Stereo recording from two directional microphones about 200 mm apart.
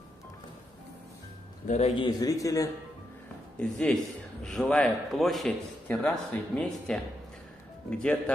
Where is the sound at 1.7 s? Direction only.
35° left (ahead or behind).